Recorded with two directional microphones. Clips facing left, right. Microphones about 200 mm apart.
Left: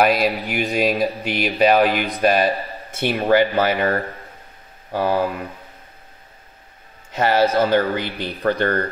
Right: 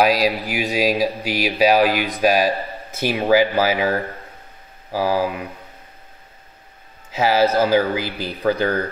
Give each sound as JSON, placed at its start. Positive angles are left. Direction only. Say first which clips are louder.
{"t": 0.0, "sound": "speech", "louder": "even", "side_deg": 0}
{"t": 7.1, "sound": "speech", "louder": "even", "side_deg": -5}